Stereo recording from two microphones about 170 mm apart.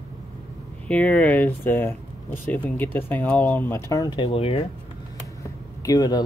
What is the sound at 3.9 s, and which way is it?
Speech, 25° left (ahead or behind).